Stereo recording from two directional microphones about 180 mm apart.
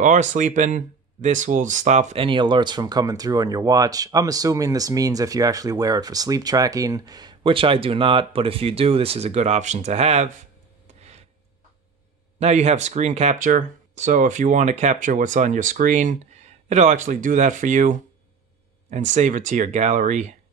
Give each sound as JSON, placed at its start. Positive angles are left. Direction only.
{"t": 0.0, "sound": "speech", "side_deg": -45}
{"t": 11.0, "sound": "a sound", "side_deg": -35}
{"t": 12.4, "sound": "speech", "side_deg": -35}